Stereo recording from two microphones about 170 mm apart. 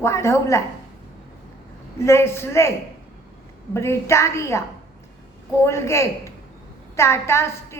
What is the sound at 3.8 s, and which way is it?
Speech, 15° left (ahead or behind).